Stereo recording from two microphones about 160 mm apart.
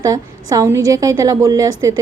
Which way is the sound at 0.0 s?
20° right (ahead or behind).